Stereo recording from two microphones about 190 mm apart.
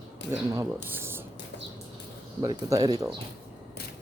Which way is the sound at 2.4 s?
20° right (ahead or behind).